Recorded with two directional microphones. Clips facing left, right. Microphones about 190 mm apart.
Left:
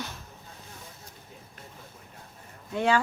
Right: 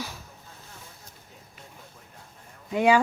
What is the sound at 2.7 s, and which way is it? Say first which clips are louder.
Speech: right 4 dB; 15° right (ahead or behind).